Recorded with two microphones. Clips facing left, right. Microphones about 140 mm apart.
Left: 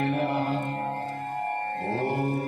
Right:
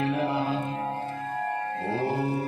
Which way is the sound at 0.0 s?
60° left (ahead or behind).